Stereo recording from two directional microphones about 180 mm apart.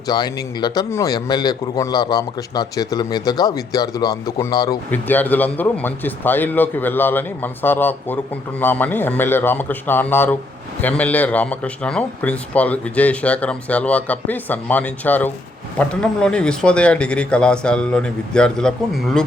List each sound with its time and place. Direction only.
0.1 s a man's voice: 25° left (ahead or behind)
4.9 s a man's voice: 10° left (ahead or behind)